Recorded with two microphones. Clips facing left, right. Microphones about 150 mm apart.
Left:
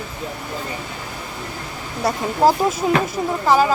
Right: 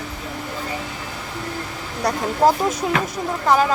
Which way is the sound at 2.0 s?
5° left (ahead or behind).